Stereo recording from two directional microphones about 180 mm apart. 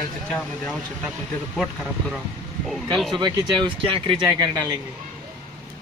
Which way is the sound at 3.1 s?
25° right (ahead or behind).